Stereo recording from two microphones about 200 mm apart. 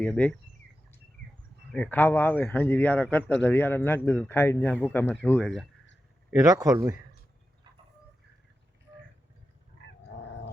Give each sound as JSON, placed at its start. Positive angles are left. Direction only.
{"t": 0.0, "sound": "speech", "side_deg": 5}
{"t": 1.7, "sound": "speech", "side_deg": 10}
{"t": 6.4, "sound": "speech", "side_deg": -15}
{"t": 9.8, "sound": "dog", "side_deg": 60}